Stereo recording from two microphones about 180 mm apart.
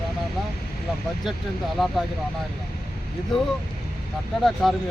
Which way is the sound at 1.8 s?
Centre (ahead or behind).